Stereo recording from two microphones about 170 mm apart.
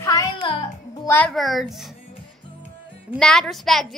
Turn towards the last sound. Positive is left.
turn(degrees=0)  # may be behind; listen again after turning